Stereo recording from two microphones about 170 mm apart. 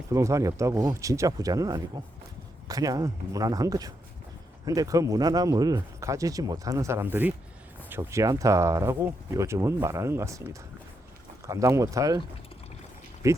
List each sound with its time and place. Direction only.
0.1 s speech: 20° right (ahead or behind)
13.2 s speech: 20° right (ahead or behind)